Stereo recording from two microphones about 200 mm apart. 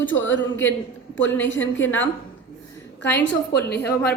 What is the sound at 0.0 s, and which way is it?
Speech, 70° left (ahead or behind).